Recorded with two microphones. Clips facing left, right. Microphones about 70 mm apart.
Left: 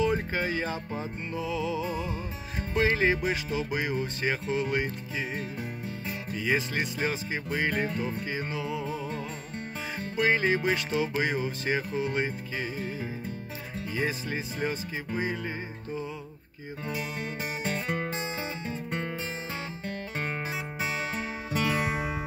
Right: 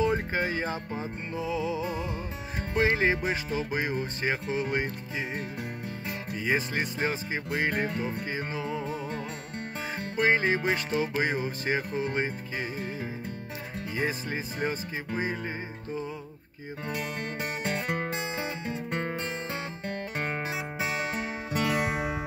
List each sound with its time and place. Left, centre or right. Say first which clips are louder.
0.0 s speech: right 1 dB; right
1.9 s music: even; right
2.7 s speech: even; right
6.4 s speech: even; right
13.9 s speech: even; right
16.9 s music: right 1 dB; right